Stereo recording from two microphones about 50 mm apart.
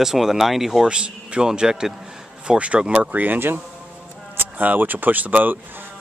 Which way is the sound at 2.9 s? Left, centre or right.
Right.